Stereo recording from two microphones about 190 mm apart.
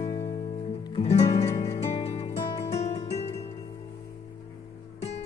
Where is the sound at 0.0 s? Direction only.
30° left (ahead or behind).